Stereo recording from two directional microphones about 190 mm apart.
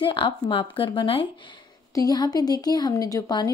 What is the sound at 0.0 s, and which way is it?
A woman's voice, 25° left (ahead or behind).